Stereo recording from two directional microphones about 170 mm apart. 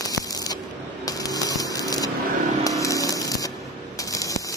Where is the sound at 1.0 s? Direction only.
20° left (ahead or behind).